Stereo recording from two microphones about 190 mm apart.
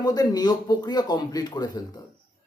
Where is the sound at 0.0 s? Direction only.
20° left (ahead or behind).